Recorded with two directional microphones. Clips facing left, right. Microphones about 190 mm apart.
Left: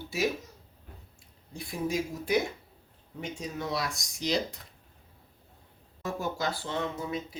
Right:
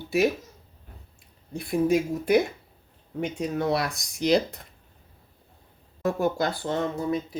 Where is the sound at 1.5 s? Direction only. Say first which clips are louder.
Right 9 dB; 60° right (ahead or behind).